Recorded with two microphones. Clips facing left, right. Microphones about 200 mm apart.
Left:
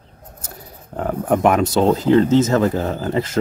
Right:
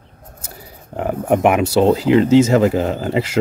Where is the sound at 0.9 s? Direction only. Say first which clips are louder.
Right 2 dB; 10° right (ahead or behind).